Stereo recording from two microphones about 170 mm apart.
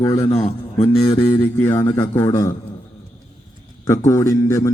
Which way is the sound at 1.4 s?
10° left (ahead or behind).